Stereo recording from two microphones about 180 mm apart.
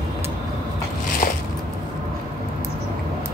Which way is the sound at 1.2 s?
50° left (ahead or behind).